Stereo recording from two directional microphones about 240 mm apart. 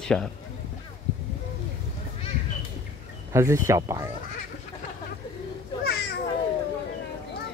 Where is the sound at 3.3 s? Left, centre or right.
Centre.